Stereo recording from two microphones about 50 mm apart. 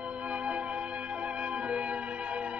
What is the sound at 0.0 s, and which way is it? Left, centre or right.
Music, right.